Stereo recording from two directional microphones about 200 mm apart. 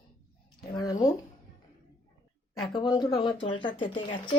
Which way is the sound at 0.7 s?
20° left (ahead or behind).